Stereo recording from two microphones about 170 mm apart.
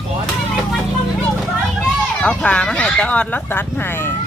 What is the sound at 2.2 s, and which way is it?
Speech, 10° left (ahead or behind).